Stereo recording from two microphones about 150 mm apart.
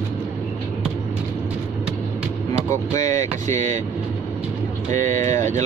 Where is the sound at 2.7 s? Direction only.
20° left (ahead or behind).